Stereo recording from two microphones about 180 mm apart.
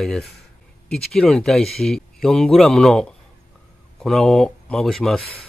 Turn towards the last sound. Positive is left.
turn(degrees=0)  # may be behind; listen again after turning